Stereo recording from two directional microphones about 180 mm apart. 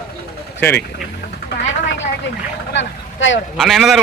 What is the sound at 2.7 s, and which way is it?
Speech, 85° left.